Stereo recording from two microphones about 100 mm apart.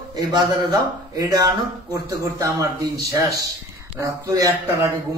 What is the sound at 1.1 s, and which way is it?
A man's voice, 35° right (ahead or behind).